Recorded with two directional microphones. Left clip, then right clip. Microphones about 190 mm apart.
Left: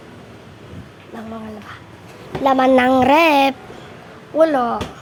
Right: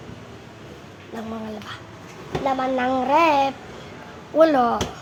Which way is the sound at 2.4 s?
60° left (ahead or behind).